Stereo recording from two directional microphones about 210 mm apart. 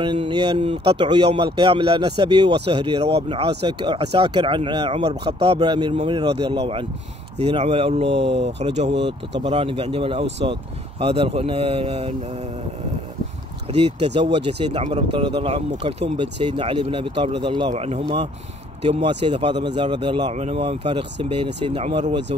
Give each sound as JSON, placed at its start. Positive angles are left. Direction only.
{"t": 0.0, "sound": "speech", "side_deg": -25}
{"t": 13.7, "sound": "speech", "side_deg": -30}
{"t": 19.0, "sound": "speech", "side_deg": -25}